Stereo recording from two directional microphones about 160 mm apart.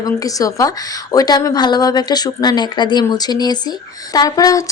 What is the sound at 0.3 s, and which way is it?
Speech, 20° left (ahead or behind).